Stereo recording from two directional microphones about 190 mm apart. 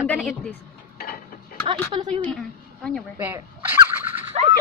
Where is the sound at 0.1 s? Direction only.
5° left (ahead or behind).